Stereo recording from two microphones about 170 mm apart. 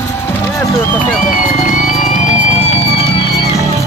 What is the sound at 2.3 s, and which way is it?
Music, 40° left (ahead or behind).